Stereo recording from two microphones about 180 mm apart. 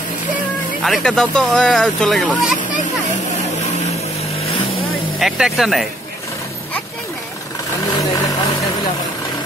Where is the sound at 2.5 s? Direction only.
45° left (ahead or behind).